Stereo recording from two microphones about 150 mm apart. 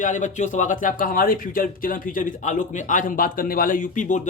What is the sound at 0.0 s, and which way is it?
Speech, 55° left (ahead or behind).